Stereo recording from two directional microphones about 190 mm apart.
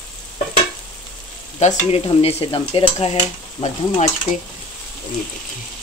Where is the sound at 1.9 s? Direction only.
30° left (ahead or behind).